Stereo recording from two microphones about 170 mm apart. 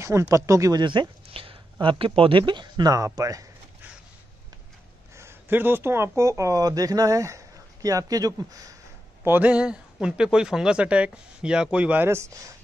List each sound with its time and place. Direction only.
0.0 s speech: 15° right (ahead or behind)
5.1 s speech: 15° right (ahead or behind)
9.2 s speech: 10° right (ahead or behind)